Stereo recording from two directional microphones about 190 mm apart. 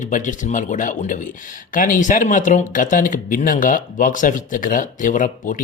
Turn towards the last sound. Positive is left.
turn(degrees=45)  # may be behind; listen again after turning